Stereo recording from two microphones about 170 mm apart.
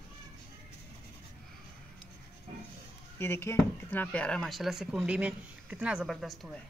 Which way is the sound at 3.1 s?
15° left (ahead or behind).